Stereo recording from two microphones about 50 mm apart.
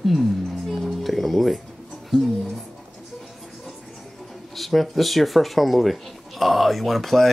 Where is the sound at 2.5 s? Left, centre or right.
Centre.